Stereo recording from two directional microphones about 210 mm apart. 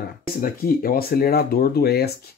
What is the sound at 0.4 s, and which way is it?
Speech, 45° left (ahead or behind).